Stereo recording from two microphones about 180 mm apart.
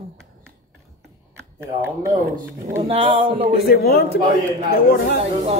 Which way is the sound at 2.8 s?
30° right (ahead or behind).